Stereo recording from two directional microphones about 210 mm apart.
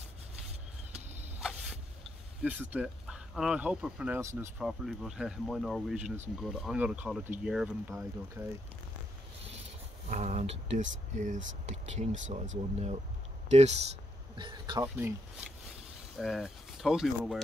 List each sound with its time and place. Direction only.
2.4 s speech: 5° right (ahead or behind)
4.6 s speech: centre (ahead or behind)
10.0 s speech: 35° right (ahead or behind)
14.3 s speech: 20° right (ahead or behind)
16.2 s speech: centre (ahead or behind)